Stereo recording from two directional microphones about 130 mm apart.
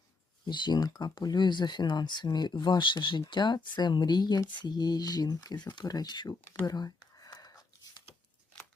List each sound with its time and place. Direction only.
0.4 s speech: 35° left (ahead or behind)